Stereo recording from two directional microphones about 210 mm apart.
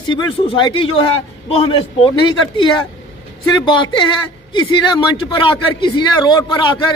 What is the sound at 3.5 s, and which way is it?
A man's voice, 20° left (ahead or behind).